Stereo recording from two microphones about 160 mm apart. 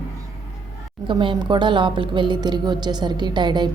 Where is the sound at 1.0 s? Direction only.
30° right (ahead or behind).